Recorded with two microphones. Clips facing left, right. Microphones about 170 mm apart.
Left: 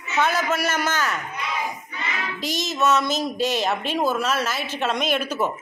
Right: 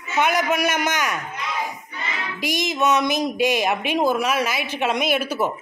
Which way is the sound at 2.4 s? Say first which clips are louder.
Right 2 dB; 15° right (ahead or behind).